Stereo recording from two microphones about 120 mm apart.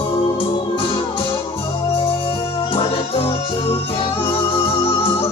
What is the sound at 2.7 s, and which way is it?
Music, 50° left (ahead or behind).